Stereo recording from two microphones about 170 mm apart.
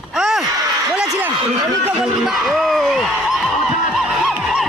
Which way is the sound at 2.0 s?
Centre (ahead or behind).